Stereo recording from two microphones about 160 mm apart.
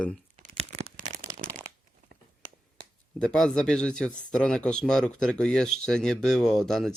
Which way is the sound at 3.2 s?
5° left (ahead or behind).